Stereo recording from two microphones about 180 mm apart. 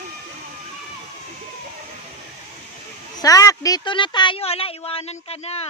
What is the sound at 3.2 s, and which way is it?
A woman's voice, 20° left (ahead or behind).